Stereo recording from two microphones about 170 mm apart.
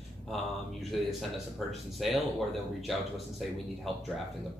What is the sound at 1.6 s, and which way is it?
Speech, centre (ahead or behind).